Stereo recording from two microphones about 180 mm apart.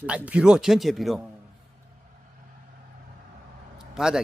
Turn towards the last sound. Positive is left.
turn(degrees=-5)  # may be behind; listen again after turning